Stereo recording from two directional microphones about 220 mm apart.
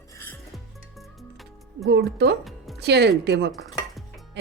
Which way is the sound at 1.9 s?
50° right (ahead or behind).